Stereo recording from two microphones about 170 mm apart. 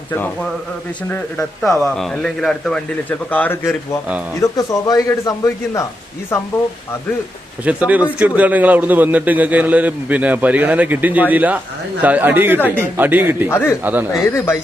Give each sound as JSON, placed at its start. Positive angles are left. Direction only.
{"t": 0.1, "sound": "speech", "side_deg": 10}
{"t": 1.8, "sound": "a man's voice", "side_deg": 0}
{"t": 7.6, "sound": "a man's voice", "side_deg": -10}
{"t": 13.5, "sound": "speech", "side_deg": 15}
{"t": 13.8, "sound": "a man's voice", "side_deg": -10}
{"t": 14.3, "sound": "speech", "side_deg": 15}